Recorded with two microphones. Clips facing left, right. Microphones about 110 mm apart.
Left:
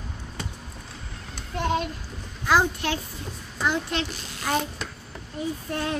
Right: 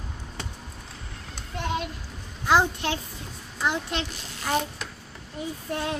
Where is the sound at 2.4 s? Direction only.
25° right (ahead or behind).